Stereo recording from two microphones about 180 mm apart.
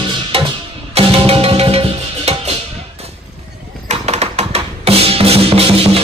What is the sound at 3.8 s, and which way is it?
Music, 35° right (ahead or behind).